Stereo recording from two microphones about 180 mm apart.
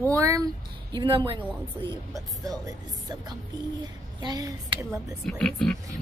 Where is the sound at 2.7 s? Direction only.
20° right (ahead or behind).